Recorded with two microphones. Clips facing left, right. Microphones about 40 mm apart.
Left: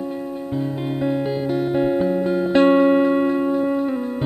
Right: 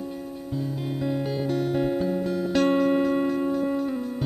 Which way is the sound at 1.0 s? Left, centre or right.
Left.